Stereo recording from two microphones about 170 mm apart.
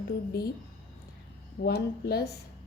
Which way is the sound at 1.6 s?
70° left (ahead or behind).